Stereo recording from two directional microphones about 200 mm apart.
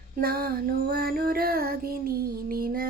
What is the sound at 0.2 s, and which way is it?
Child singing, 50° right (ahead or behind).